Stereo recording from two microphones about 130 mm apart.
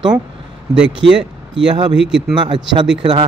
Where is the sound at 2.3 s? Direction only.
40° right (ahead or behind).